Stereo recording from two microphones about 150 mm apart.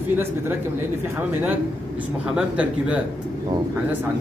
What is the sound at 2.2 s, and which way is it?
Speech, 5° right (ahead or behind).